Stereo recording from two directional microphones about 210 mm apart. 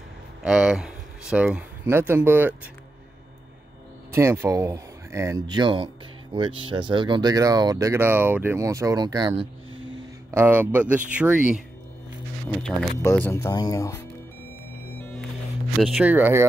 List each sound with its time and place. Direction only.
0.4 s speech: 5° right (ahead or behind)
4.1 s speech: 10° right (ahead or behind)
10.3 s speech: 10° right (ahead or behind)
12.6 s speech: 5° left (ahead or behind)
15.8 s speech: 5° right (ahead or behind)